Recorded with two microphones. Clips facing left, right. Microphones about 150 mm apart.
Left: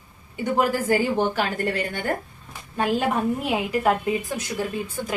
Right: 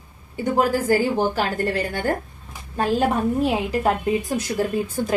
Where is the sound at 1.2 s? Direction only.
40° right (ahead or behind).